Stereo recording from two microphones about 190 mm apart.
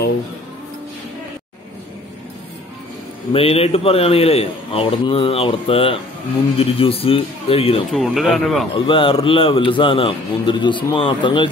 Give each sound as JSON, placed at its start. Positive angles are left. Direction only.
{"t": 3.3, "sound": "a man's voice", "side_deg": 30}
{"t": 7.9, "sound": "speech", "side_deg": 0}
{"t": 8.7, "sound": "a man's voice", "side_deg": 25}